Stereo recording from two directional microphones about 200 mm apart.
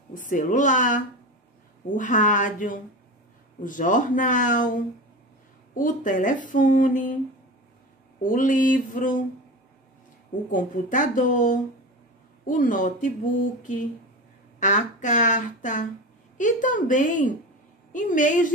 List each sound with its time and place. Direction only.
0.1 s speech: 40° left (ahead or behind)
8.2 s speech: 40° left (ahead or behind)
10.5 s speech: 40° left (ahead or behind)